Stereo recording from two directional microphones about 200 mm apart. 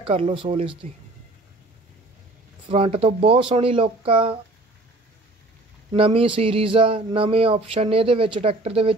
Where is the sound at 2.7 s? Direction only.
30° right (ahead or behind).